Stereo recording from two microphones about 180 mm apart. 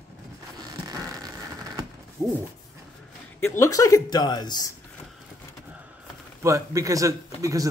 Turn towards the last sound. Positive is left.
turn(degrees=-20)  # may be behind; listen again after turning